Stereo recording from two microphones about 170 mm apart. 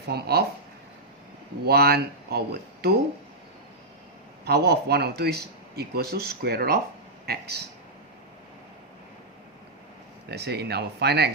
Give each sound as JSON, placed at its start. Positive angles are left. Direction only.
{"t": 0.1, "sound": "speech", "side_deg": -70}
{"t": 1.6, "sound": "speech", "side_deg": -65}
{"t": 4.4, "sound": "speech", "side_deg": -70}
{"t": 10.2, "sound": "speech", "side_deg": -75}